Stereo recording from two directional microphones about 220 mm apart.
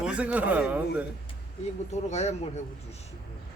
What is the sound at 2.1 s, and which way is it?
Speech, 30° left (ahead or behind).